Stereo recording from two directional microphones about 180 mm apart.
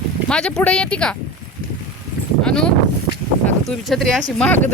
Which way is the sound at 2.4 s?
5° left (ahead or behind).